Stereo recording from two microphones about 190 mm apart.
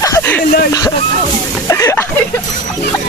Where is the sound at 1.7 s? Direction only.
15° left (ahead or behind).